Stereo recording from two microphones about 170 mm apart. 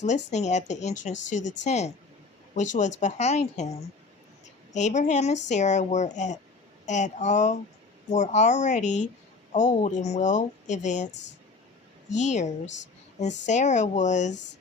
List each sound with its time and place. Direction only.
0.0 s a woman's voice: 45° left (ahead or behind)
12.1 s speech: 45° left (ahead or behind)
12.6 s a woman's voice: 90° left
13.1 s speech: 45° left (ahead or behind)